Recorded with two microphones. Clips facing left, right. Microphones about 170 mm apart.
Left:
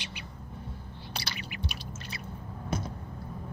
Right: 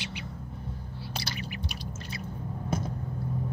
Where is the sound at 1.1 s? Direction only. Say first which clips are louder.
Right 3 dB; 45° right (ahead or behind).